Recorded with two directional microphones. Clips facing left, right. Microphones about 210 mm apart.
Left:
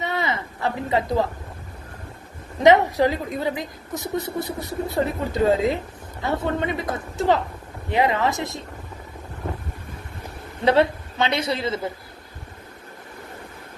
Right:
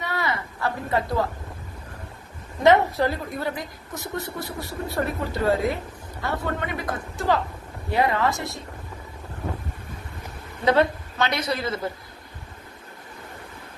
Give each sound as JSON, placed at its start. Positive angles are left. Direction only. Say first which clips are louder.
{"t": 0.0, "sound": "a sound", "louder": "left 2 dB", "side_deg": 20}
{"t": 2.9, "sound": "a woman's voice", "louder": "left 4 dB", "side_deg": 15}
{"t": 10.7, "sound": "a woman's voice", "louder": "left 2 dB", "side_deg": 25}